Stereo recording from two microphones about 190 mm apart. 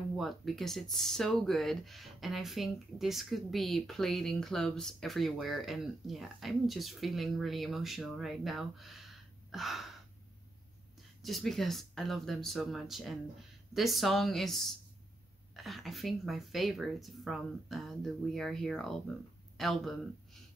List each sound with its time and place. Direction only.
0.2 s speech: centre (ahead or behind)
11.2 s speech: centre (ahead or behind)